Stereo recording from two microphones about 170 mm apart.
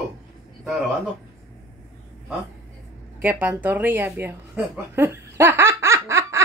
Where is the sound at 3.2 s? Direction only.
10° right (ahead or behind).